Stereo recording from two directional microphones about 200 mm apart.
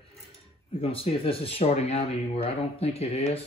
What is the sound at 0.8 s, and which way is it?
Speech, 30° left (ahead or behind).